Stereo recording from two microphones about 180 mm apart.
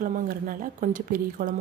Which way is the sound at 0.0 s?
50° right (ahead or behind).